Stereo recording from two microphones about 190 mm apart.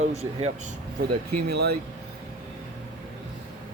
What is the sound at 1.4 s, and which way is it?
Speech, 60° right (ahead or behind).